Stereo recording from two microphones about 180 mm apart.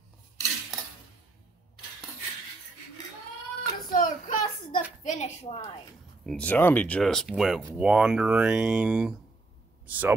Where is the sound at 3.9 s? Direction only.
50° left (ahead or behind).